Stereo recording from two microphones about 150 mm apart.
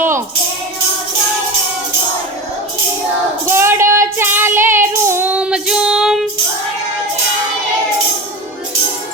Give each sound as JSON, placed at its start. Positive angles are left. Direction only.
{"t": 3.5, "sound": "child singing", "side_deg": -15}